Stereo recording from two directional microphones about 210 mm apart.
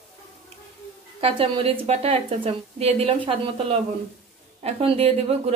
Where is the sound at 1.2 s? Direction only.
25° right (ahead or behind).